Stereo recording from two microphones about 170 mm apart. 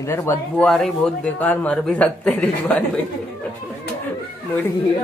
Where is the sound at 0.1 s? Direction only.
15° left (ahead or behind).